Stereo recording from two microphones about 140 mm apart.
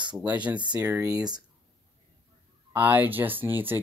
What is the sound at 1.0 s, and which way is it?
Speech, 25° right (ahead or behind).